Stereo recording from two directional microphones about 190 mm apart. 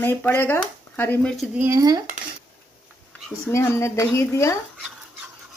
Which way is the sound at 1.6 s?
20° right (ahead or behind).